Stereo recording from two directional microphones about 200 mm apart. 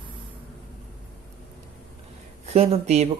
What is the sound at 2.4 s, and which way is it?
Speech, 30° right (ahead or behind).